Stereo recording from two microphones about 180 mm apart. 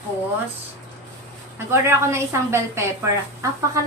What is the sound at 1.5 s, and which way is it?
A woman's voice, 15° right (ahead or behind).